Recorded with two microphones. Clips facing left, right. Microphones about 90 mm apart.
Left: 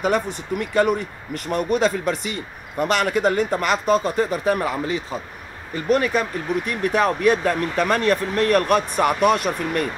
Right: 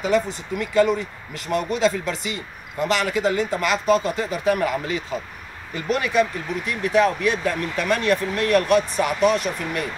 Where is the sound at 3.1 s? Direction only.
45° left (ahead or behind).